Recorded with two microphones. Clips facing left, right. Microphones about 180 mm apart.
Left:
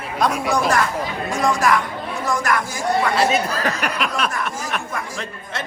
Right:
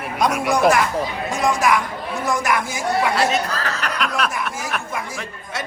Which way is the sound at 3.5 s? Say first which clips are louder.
Left 3 dB; 15° left (ahead or behind).